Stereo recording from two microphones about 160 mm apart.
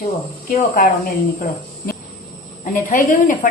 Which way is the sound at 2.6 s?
55° left (ahead or behind).